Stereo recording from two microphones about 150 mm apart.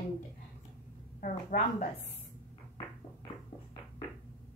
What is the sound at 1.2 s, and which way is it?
Speech, 60° left (ahead or behind).